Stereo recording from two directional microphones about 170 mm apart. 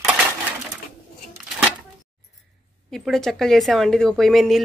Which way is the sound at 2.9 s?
Centre (ahead or behind).